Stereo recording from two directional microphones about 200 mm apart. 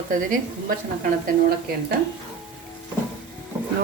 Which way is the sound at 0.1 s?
40° right (ahead or behind).